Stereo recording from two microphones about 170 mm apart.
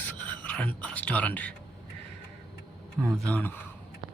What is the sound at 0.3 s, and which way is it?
Speech, 10° left (ahead or behind).